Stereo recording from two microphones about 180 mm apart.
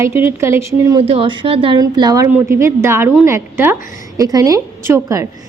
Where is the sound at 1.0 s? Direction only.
30° right (ahead or behind).